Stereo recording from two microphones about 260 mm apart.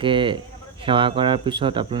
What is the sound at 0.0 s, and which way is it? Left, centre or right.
Speech, centre.